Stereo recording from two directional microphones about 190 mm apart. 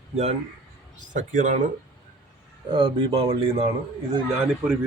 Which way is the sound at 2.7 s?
25° right (ahead or behind).